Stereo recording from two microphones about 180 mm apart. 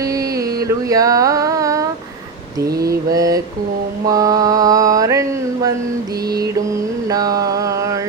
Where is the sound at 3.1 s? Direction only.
20° right (ahead or behind).